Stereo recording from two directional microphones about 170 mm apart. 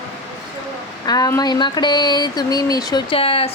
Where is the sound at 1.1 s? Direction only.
20° left (ahead or behind).